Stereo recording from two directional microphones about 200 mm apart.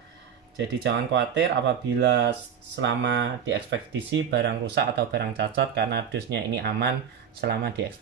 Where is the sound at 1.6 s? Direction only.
60° right (ahead or behind).